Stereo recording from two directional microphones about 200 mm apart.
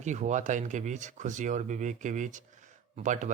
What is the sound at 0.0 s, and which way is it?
Speech, 35° right (ahead or behind).